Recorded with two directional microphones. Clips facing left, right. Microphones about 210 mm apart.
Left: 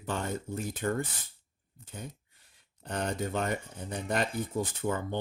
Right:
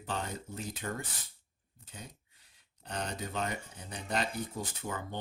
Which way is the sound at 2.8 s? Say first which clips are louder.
Left 6 dB; 50° left (ahead or behind).